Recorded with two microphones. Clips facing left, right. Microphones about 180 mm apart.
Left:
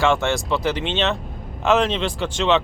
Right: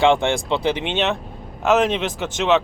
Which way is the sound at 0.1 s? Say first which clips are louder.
Right 2 dB; 15° right (ahead or behind).